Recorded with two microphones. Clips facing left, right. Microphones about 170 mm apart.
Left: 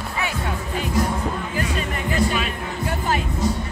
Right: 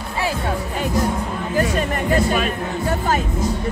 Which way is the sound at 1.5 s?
45° right (ahead or behind).